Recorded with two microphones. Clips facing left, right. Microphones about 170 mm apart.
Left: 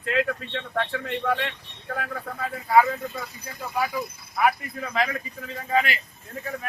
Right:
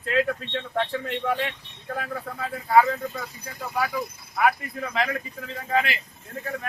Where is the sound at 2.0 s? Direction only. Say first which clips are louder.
Left 1 dB; centre (ahead or behind).